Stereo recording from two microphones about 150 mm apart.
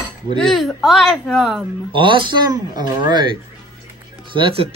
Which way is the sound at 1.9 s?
35° right (ahead or behind).